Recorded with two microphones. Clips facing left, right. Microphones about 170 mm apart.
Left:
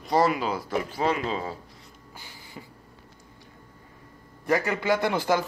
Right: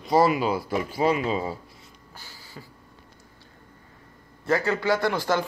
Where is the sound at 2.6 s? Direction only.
15° left (ahead or behind).